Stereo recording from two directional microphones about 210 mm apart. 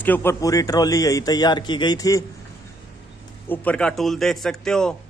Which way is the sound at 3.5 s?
5° left (ahead or behind).